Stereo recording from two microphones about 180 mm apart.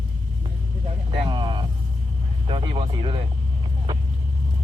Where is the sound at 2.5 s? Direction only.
30° right (ahead or behind).